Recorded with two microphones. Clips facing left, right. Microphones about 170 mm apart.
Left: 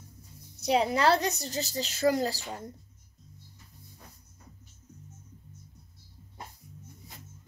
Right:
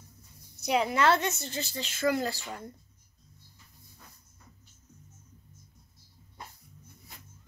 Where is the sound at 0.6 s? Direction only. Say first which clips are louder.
Left 1 dB; 35° left (ahead or behind).